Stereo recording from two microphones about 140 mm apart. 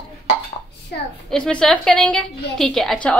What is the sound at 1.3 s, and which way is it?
A woman's voice, 5° left (ahead or behind).